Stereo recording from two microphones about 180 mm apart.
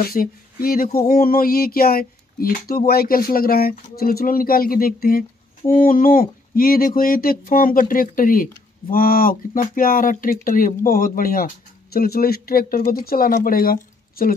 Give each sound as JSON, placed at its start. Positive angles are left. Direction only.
{"t": 0.0, "sound": "speech", "side_deg": 55}